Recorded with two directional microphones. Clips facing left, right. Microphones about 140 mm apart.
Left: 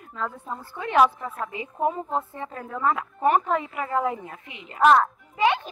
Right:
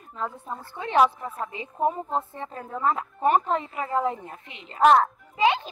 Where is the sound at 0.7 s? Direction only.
25° right (ahead or behind).